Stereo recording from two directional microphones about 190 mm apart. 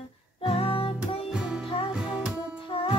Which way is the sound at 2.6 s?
30° left (ahead or behind).